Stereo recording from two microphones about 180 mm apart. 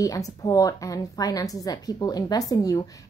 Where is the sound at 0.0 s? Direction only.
20° left (ahead or behind).